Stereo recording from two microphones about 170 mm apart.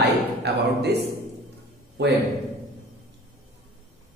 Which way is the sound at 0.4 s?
75° right (ahead or behind).